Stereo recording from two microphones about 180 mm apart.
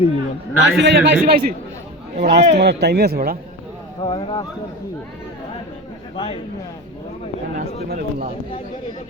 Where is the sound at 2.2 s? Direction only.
65° right (ahead or behind).